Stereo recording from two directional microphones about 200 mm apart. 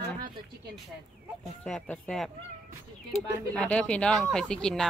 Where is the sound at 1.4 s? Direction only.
5° left (ahead or behind).